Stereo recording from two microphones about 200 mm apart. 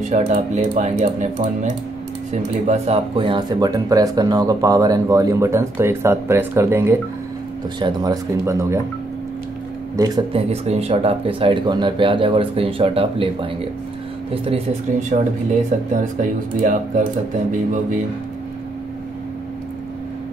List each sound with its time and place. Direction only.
0.1 s speech: 35° right (ahead or behind); by 8.7 s 15° right (ahead or behind)
9.9 s speech: 20° right (ahead or behind); by 17.0 s 40° right (ahead or behind)